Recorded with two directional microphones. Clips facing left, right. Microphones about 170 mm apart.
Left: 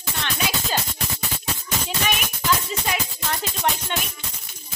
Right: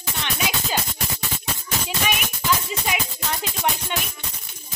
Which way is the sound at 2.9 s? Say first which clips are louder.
Even; 15° right (ahead or behind).